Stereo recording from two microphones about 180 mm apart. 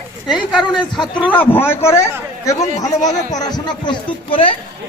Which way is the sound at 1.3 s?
10° left (ahead or behind).